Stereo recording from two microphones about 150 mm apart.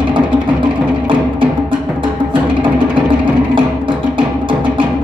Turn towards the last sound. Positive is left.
turn(degrees=-35)  # may be behind; listen again after turning